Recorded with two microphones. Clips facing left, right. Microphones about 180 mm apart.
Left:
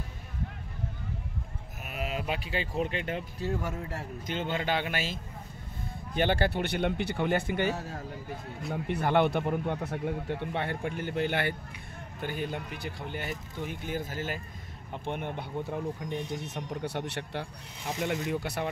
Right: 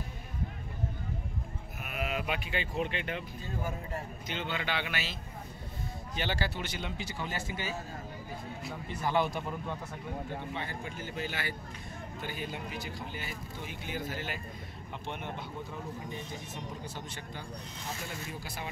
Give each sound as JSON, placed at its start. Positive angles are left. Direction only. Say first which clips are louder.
{"t": 1.9, "sound": "speech", "louder": "left 1 dB", "side_deg": 35}
{"t": 3.3, "sound": "speech", "louder": "left 5 dB", "side_deg": 75}
{"t": 4.3, "sound": "speech", "louder": "left 5 dB", "side_deg": 45}
{"t": 13.3, "sound": "speech", "louder": "left 5 dB", "side_deg": 45}